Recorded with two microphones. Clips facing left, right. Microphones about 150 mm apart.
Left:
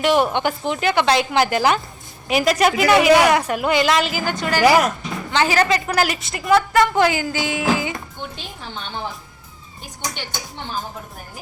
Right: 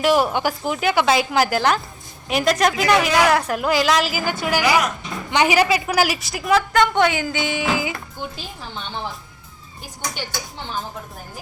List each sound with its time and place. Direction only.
0.0 s a woman's voice: 5° right (ahead or behind)